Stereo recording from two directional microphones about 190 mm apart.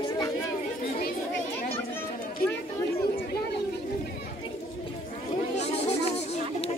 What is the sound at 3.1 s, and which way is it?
Chatter, 55° left (ahead or behind).